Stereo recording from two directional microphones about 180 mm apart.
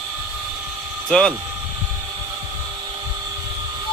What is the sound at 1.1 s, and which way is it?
Speech, centre (ahead or behind).